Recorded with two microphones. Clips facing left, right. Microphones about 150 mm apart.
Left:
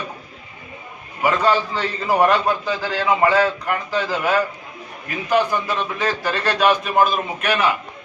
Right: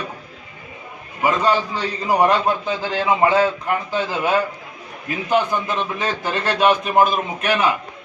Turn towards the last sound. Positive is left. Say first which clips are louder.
# right 1 dB
turn(degrees=-20)  # may be behind; listen again after turning